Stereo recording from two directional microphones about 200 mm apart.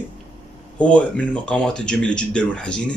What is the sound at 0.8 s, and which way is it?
Speech, 5° left (ahead or behind).